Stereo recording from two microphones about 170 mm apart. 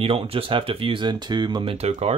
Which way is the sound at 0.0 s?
35° right (ahead or behind).